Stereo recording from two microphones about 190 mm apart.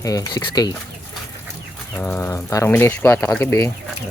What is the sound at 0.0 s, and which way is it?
Speech, 20° left (ahead or behind).